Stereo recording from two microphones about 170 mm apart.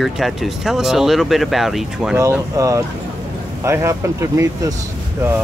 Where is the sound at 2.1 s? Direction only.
15° right (ahead or behind).